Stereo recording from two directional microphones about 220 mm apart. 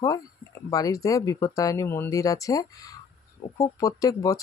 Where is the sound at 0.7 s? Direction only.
15° left (ahead or behind).